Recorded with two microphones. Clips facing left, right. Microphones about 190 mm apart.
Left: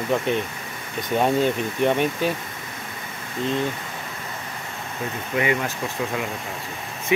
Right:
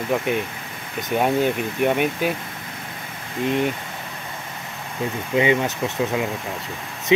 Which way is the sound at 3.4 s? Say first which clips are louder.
Right 3 dB; 15° right (ahead or behind).